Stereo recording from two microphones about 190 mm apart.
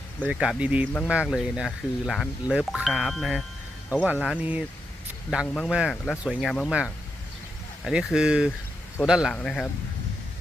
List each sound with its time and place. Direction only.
0.3 s speech: 5° right (ahead or behind)